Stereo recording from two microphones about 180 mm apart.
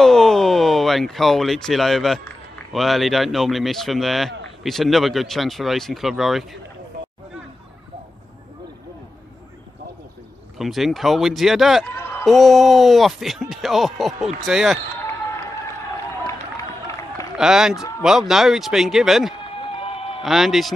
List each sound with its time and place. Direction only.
0.0 s speech: 5° left (ahead or behind)
10.6 s speech: centre (ahead or behind)
17.4 s speech: 5° right (ahead or behind)
19.7 s a sound: 30° left (ahead or behind)
20.2 s speech: centre (ahead or behind)